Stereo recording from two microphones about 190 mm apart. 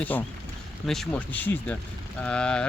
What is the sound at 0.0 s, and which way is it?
Speech, 10° left (ahead or behind).